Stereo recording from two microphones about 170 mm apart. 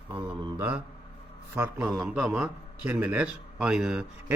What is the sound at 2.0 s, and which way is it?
A man's voice, 5° right (ahead or behind).